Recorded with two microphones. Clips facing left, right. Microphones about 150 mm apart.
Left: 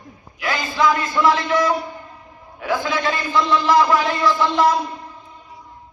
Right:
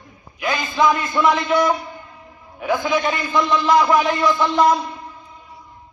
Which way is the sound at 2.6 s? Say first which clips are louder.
Right 2 dB; 20° right (ahead or behind).